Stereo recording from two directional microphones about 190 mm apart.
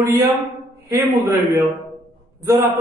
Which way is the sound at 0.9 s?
15° right (ahead or behind).